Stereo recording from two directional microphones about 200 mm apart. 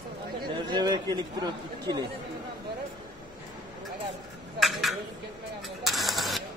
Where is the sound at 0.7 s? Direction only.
20° right (ahead or behind).